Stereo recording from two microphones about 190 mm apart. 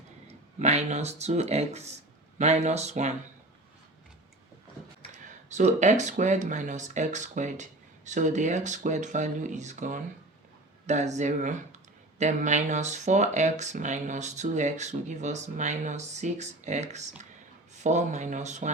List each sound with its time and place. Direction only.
0.6 s speech: 35° right (ahead or behind)
5.1 s speech: 40° right (ahead or behind)